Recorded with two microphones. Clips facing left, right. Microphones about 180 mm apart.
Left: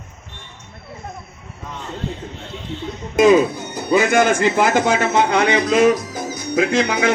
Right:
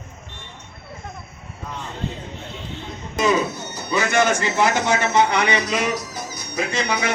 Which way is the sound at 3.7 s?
50° left (ahead or behind).